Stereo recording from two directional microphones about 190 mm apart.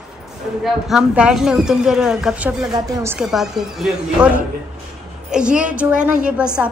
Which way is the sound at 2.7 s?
20° right (ahead or behind).